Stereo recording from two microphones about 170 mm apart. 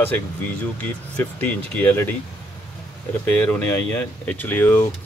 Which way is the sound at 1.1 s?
10° left (ahead or behind).